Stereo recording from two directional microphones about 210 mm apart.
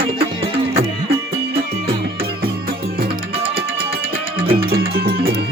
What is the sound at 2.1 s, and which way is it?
Music, 45° right (ahead or behind).